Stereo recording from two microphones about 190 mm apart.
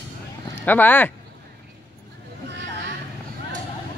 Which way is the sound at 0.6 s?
10° left (ahead or behind).